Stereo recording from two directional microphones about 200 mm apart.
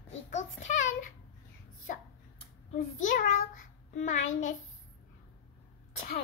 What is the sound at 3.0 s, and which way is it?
A child's voice, 40° left (ahead or behind).